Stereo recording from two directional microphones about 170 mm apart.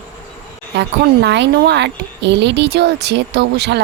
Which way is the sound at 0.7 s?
90° right.